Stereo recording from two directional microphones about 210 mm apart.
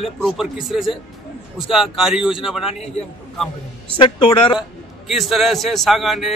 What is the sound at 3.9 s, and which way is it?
Speech, 20° left (ahead or behind).